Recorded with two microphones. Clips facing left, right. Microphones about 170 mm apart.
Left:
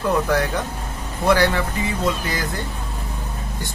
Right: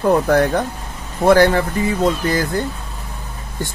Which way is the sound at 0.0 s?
50° right (ahead or behind).